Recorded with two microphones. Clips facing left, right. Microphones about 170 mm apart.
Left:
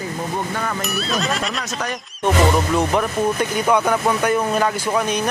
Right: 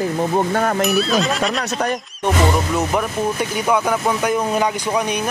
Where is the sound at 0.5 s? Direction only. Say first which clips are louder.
Right 6 dB; 50° right (ahead or behind).